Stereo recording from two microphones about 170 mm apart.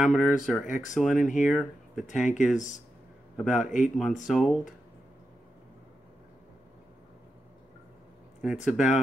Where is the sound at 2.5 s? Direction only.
45° left (ahead or behind).